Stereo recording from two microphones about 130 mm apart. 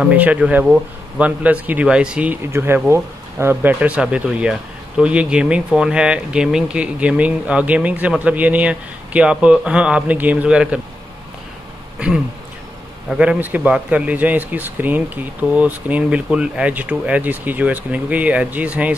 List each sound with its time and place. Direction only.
0.0 s speech: 10° right (ahead or behind)
13.1 s speech: 10° right (ahead or behind)